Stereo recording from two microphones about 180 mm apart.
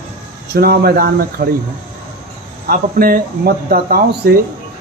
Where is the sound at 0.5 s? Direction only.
55° right (ahead or behind).